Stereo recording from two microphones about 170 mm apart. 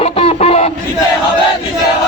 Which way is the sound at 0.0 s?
35° left (ahead or behind).